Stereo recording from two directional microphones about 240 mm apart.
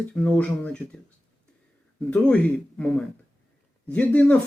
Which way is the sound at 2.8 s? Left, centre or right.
Centre.